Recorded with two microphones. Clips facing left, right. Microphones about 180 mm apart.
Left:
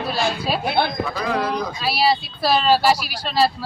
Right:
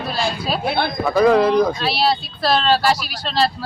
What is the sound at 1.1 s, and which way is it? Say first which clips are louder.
Speech: right 9 dB; 55° right (ahead or behind).